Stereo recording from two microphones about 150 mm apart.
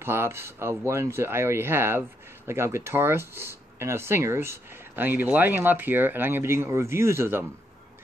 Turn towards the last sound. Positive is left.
turn(degrees=-15)  # may be behind; listen again after turning